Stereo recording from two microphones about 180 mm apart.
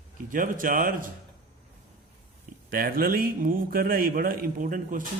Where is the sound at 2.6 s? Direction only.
55° right (ahead or behind).